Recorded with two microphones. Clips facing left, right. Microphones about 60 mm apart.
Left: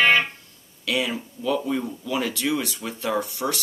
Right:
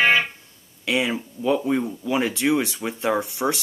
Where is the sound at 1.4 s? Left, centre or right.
Right.